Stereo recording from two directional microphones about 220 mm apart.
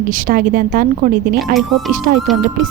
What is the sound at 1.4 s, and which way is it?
Speech, centre (ahead or behind).